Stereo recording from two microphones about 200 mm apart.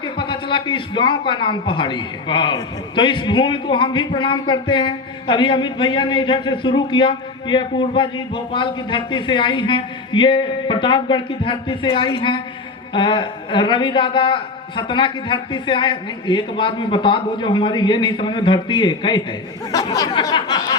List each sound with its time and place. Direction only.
0.0 s a man's voice: 25° left (ahead or behind)